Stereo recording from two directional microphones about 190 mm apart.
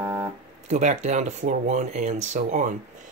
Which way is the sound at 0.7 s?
40° right (ahead or behind).